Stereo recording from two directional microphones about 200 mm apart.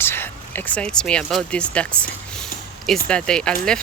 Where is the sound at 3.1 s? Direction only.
5° left (ahead or behind).